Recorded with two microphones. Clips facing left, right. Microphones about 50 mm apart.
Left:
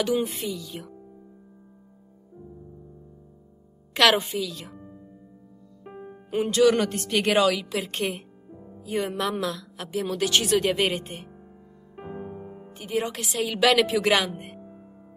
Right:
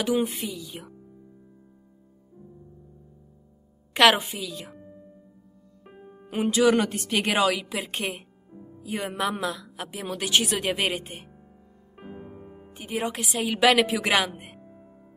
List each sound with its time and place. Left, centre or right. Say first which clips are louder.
0.0 s a woman's voice: even; centre
3.9 s a woman's voice: right 1 dB; centre
5.9 s music: left 7 dB; centre
6.4 s a woman's voice: left 1 dB; centre
8.5 s music: left 1 dB; centre
8.8 s a woman's voice: left 1 dB; centre
11.9 s music: left 5 dB; centre
12.7 s a woman's voice: left 1 dB; centre
14.6 s music: left 3 dB; centre